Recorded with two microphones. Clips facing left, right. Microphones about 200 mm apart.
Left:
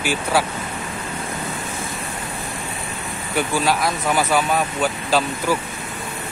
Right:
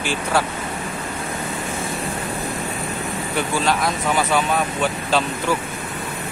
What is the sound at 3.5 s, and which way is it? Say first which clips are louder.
Speech: even; 5° left (ahead or behind).